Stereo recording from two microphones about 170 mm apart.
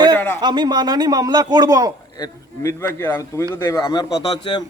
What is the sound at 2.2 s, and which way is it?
A man's voice, 20° left (ahead or behind).